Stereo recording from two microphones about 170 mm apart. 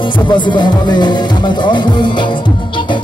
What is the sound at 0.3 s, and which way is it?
Music, 25° left (ahead or behind).